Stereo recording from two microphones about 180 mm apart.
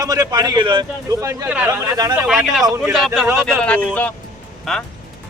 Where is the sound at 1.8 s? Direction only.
20° right (ahead or behind).